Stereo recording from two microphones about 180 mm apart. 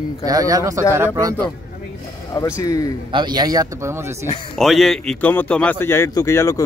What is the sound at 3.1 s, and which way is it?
A man's voice, 25° right (ahead or behind).